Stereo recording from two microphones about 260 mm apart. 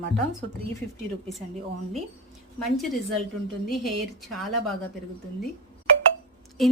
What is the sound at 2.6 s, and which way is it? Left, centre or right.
Speech, centre.